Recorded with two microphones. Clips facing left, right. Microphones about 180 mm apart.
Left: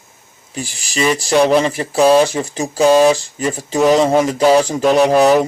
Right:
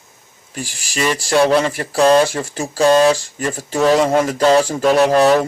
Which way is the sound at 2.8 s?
5° left (ahead or behind).